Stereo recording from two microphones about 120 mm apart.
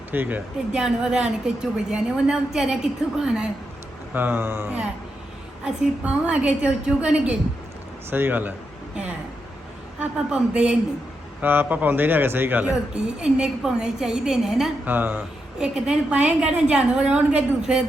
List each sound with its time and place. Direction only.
0.1 s a woman's voice: 15° right (ahead or behind)
10.0 s a man's voice: 10° right (ahead or behind)
14.8 s a man's voice: 15° right (ahead or behind)